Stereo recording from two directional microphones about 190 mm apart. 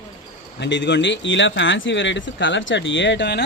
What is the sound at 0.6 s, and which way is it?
Speech, 65° left (ahead or behind).